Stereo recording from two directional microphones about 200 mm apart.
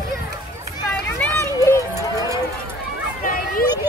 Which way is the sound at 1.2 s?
15° left (ahead or behind).